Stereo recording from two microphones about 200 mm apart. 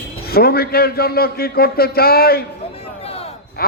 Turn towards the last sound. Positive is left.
turn(degrees=50)  # may be behind; listen again after turning